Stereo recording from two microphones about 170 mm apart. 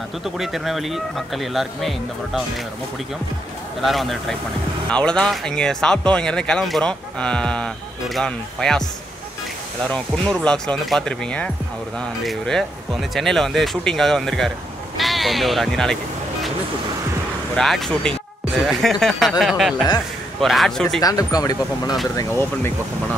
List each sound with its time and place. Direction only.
0.2 s speech: centre (ahead or behind)
3.8 s speech: centre (ahead or behind)
10.3 s speech: 5° left (ahead or behind)
17.6 s speech: centre (ahead or behind)
21.0 s speech: 20° left (ahead or behind)